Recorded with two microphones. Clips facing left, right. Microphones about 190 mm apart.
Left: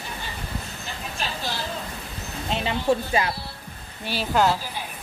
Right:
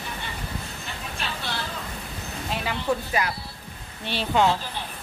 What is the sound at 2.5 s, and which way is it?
Music, 25° left (ahead or behind).